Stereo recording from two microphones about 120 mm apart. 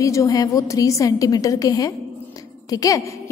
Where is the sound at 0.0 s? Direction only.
25° left (ahead or behind).